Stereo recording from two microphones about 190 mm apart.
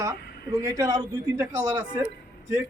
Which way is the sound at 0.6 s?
20° right (ahead or behind).